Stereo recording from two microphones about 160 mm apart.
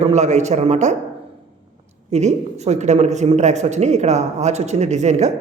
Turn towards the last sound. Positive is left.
turn(degrees=-45)  # may be behind; listen again after turning